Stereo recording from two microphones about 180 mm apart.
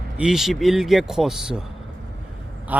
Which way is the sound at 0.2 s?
Centre (ahead or behind).